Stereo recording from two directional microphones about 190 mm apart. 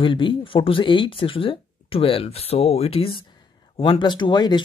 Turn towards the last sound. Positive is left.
turn(degrees=25)  # may be behind; listen again after turning